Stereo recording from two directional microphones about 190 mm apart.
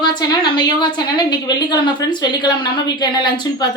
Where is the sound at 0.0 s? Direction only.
20° left (ahead or behind).